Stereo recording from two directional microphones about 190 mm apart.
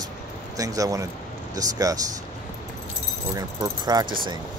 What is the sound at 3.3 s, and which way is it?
Speech, 20° right (ahead or behind).